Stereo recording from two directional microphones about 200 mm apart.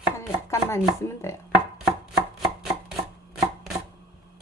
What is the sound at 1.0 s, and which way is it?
Speech, 15° left (ahead or behind).